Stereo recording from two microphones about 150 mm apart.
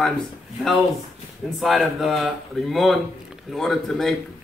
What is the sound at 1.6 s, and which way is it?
A man's voice, centre (ahead or behind).